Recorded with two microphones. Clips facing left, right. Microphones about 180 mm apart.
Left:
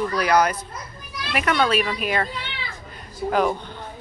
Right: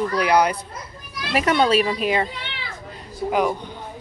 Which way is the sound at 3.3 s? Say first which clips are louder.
Even; 10° right (ahead or behind).